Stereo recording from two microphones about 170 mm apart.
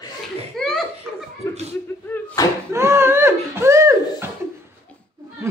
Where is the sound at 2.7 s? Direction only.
15° right (ahead or behind).